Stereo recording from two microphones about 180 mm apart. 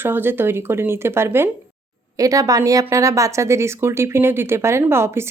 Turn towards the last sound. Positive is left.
turn(degrees=-15)  # may be behind; listen again after turning